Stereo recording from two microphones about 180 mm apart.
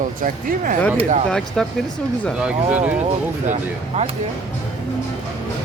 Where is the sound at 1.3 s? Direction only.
5° left (ahead or behind).